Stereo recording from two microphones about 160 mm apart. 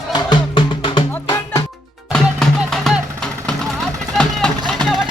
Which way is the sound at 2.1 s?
Centre (ahead or behind).